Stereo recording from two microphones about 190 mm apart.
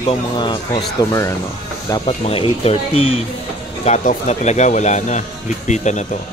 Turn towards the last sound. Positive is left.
turn(degrees=40)  # may be behind; listen again after turning